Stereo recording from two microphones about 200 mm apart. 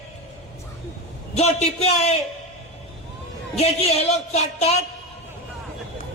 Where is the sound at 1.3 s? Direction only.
35° left (ahead or behind).